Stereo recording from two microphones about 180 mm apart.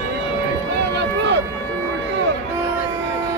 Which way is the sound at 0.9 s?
75° right (ahead or behind).